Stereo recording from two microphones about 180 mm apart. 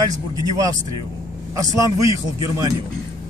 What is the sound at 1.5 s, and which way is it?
Speech, 20° right (ahead or behind).